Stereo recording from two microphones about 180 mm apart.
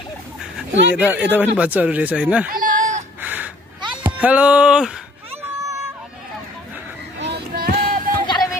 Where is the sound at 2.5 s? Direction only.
50° right (ahead or behind).